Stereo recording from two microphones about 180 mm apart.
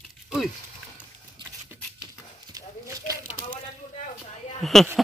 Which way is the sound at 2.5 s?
20° right (ahead or behind).